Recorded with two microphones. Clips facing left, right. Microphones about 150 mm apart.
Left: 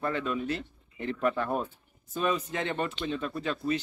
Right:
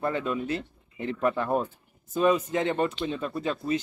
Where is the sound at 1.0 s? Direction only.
20° right (ahead or behind).